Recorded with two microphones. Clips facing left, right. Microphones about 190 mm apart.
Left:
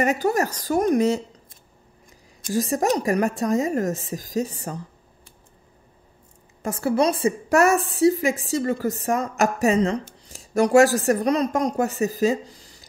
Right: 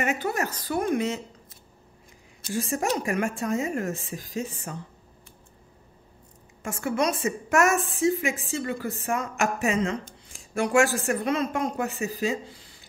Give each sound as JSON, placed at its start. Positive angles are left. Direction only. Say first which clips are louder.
{"t": 0.0, "sound": "speech", "louder": "left 6 dB", "side_deg": 40}
{"t": 2.5, "sound": "speech", "louder": "left 5 dB", "side_deg": 35}
{"t": 6.6, "sound": "speech", "louder": "left 5 dB", "side_deg": 35}